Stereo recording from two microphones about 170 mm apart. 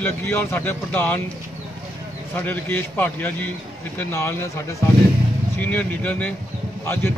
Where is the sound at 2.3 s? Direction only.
10° left (ahead or behind).